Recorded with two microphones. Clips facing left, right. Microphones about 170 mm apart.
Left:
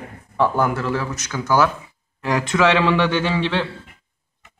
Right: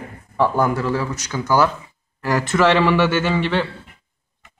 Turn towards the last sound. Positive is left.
turn(degrees=-5)  # may be behind; listen again after turning